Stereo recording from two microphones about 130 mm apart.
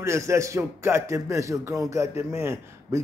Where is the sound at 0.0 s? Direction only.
20° right (ahead or behind).